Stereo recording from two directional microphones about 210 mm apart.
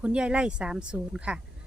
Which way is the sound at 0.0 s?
5° right (ahead or behind).